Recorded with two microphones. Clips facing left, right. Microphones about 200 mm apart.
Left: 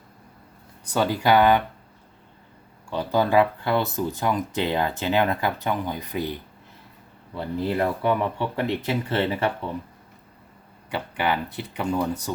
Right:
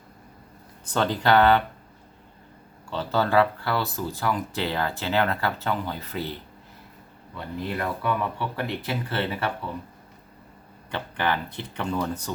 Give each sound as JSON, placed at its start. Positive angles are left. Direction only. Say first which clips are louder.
{"t": 0.9, "sound": "speech", "louder": "left 1 dB", "side_deg": 10}
{"t": 2.9, "sound": "speech", "louder": "left 2 dB", "side_deg": 15}
{"t": 7.3, "sound": "speech", "louder": "left 6 dB", "side_deg": 25}
{"t": 10.9, "sound": "speech", "louder": "left 2 dB", "side_deg": 10}